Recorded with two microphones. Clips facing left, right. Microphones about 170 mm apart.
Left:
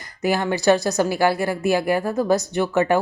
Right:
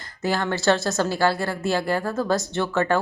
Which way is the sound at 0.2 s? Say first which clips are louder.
Left 3 dB; 15° left (ahead or behind).